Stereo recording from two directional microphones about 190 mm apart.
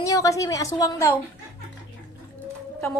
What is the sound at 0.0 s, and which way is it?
A woman's voice, 15° left (ahead or behind).